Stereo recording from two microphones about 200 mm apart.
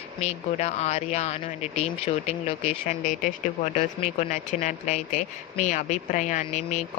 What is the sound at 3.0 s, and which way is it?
Speech, 40° left (ahead or behind).